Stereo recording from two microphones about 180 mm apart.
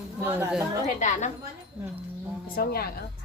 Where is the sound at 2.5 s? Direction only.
55° left (ahead or behind).